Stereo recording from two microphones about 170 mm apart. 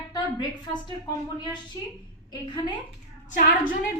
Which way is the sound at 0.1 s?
25° left (ahead or behind).